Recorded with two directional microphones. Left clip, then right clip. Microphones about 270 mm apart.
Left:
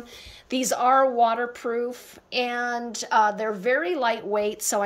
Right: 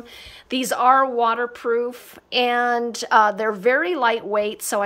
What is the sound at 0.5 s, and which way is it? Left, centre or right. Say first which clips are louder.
Speech: right 4 dB; centre.